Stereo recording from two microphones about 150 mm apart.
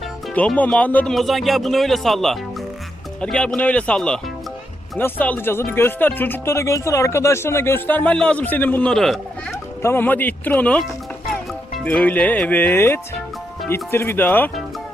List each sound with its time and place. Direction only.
0.3 s speech: 10° left (ahead or behind)
9.8 s speech: 15° left (ahead or behind)